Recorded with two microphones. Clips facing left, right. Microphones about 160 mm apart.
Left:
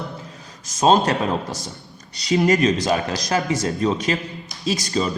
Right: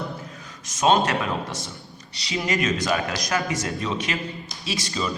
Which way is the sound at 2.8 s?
25° left (ahead or behind).